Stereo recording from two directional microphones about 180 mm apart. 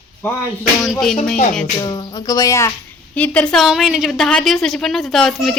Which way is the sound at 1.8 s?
20° left (ahead or behind).